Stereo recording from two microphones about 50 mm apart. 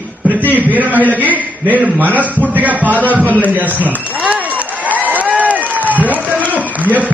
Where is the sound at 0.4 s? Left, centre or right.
Right.